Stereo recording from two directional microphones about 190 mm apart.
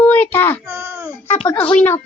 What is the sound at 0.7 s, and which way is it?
Speech, 15° right (ahead or behind).